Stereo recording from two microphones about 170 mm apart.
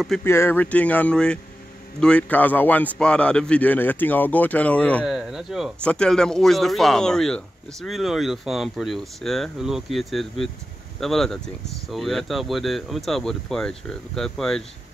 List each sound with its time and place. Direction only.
0.2 s a man's voice: 15° left (ahead or behind)
5.0 s speech: 5° right (ahead or behind)